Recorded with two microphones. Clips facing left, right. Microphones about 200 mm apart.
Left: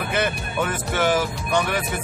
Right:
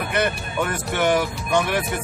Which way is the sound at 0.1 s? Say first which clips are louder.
Right 1 dB; centre (ahead or behind).